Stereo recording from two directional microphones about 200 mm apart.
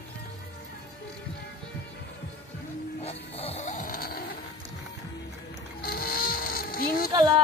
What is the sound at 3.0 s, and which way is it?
Snoring, 30° left (ahead or behind).